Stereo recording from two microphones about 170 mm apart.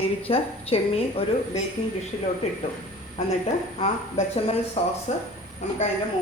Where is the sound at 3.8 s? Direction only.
35° left (ahead or behind).